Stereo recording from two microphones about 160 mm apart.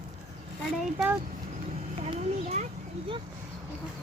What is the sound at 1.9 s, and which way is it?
Children playing, 40° right (ahead or behind).